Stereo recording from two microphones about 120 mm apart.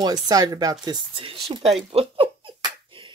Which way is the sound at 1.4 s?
55° right (ahead or behind).